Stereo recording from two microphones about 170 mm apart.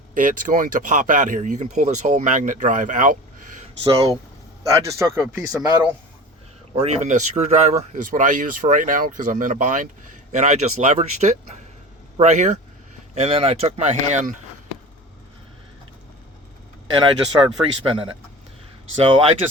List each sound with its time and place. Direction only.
0.1 s speech: 50° right (ahead or behind)
4.7 s speech: 15° right (ahead or behind)
6.7 s speech: 40° right (ahead or behind)
13.1 s speech: 35° right (ahead or behind)
17.4 s speech: 30° right (ahead or behind)